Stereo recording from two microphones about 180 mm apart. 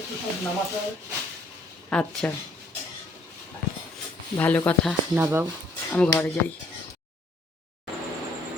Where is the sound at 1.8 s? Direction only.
5° left (ahead or behind).